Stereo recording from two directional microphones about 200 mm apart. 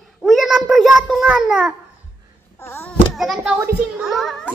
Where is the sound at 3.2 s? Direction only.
Centre (ahead or behind).